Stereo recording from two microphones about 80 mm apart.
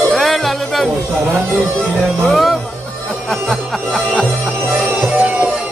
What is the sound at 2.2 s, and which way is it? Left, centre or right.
Music, centre.